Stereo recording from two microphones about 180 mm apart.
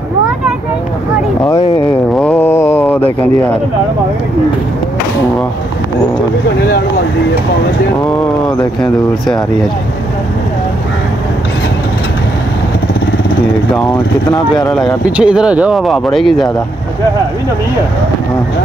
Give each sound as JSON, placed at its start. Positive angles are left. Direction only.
{"t": 2.1, "sound": "a sound", "side_deg": 10}
{"t": 14.3, "sound": "speech", "side_deg": 25}
{"t": 14.7, "sound": "speech", "side_deg": 5}
{"t": 15.0, "sound": "speech", "side_deg": -5}